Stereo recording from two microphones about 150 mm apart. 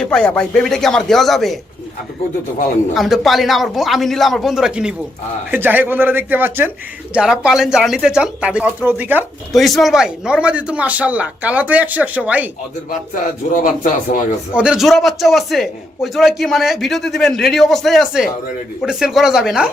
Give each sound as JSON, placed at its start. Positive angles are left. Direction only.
{"t": 0.0, "sound": "a man's voice", "side_deg": 5}
{"t": 2.9, "sound": "a man's voice", "side_deg": 0}
{"t": 9.5, "sound": "speech", "side_deg": 0}
{"t": 13.5, "sound": "speech", "side_deg": 65}
{"t": 14.5, "sound": "a man's voice", "side_deg": -5}